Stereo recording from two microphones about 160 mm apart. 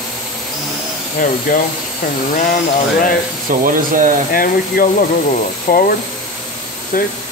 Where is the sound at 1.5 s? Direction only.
60° left (ahead or behind).